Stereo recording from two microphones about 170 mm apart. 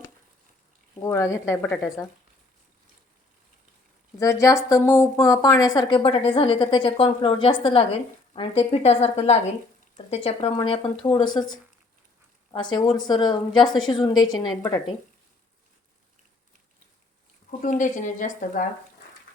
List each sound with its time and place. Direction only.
0.9 s speech: 15° left (ahead or behind)
4.2 s a woman's voice: 20° left (ahead or behind)
12.5 s a woman's voice: 25° left (ahead or behind)
17.6 s speech: 50° left (ahead or behind)